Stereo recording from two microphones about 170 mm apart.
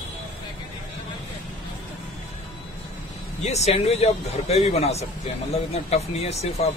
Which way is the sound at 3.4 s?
40° left (ahead or behind).